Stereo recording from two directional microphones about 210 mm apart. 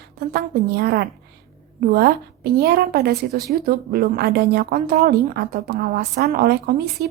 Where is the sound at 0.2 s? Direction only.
50° right (ahead or behind).